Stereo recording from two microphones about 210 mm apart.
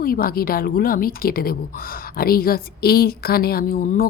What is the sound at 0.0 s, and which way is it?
A woman's voice, 45° left (ahead or behind).